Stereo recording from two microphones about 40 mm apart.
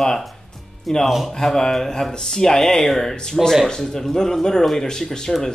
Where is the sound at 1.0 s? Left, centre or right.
Centre.